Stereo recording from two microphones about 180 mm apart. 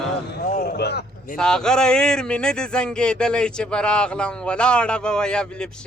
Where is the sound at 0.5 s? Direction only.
60° left (ahead or behind).